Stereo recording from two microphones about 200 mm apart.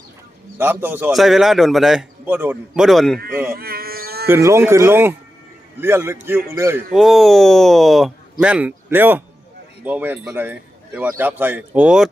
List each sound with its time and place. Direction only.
0.6 s a man's voice: 10° right (ahead or behind)
3.5 s a sound: 50° right (ahead or behind)
4.3 s a man's voice: 15° right (ahead or behind)
6.9 s a man's voice: centre (ahead or behind)